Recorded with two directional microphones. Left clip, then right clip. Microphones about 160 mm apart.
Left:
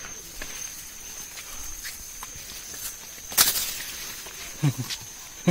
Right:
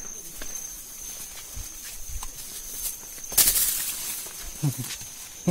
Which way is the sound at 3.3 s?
75° right (ahead or behind).